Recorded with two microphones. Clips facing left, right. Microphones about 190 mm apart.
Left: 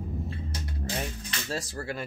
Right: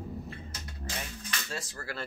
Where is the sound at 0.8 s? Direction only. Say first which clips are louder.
Left 6 dB; 35° left (ahead or behind).